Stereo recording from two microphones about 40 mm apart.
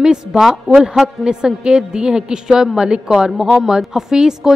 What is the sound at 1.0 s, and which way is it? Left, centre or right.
A woman's voice, right.